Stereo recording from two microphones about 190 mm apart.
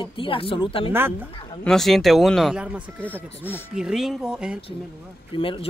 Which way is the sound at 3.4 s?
10° left (ahead or behind).